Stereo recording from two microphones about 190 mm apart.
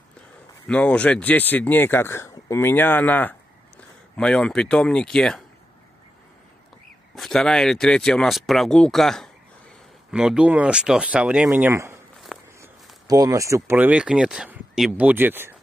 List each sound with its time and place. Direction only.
0.7 s speech: 5° left (ahead or behind)
7.2 s speech: centre (ahead or behind); by 12.0 s 15° right (ahead or behind)
12.3 s walk: centre (ahead or behind)
13.0 s speech: 20° right (ahead or behind)